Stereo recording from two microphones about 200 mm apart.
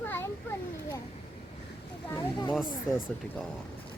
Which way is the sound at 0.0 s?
10° left (ahead or behind).